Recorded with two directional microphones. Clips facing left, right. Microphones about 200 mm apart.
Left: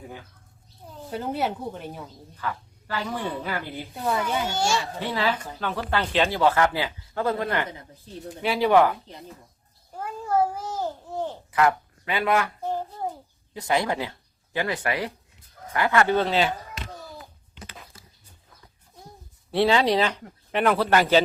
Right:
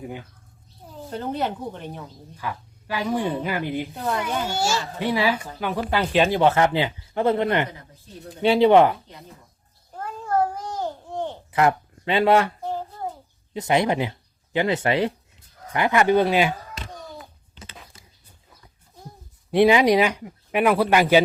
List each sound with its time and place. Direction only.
0.9 s speech: centre (ahead or behind)
2.3 s speech: 15° right (ahead or behind)
3.9 s speech: centre (ahead or behind); by 9.0 s 25° right (ahead or behind)
9.9 s babbling: 10° left (ahead or behind)
11.5 s speech: 25° right (ahead or behind)
12.6 s a sound: 15° left (ahead or behind)
13.5 s speech: 20° right (ahead or behind)
19.5 s speech: 15° right (ahead or behind)